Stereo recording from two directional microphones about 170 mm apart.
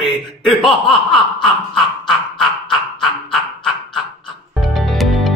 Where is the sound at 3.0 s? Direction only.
5° left (ahead or behind).